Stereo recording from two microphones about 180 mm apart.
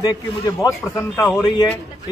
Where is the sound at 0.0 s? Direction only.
20° left (ahead or behind).